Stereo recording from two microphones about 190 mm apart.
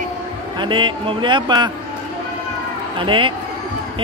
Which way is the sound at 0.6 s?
25° right (ahead or behind).